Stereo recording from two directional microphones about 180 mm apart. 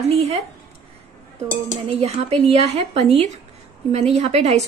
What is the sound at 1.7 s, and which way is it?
A woman's voice, 35° right (ahead or behind).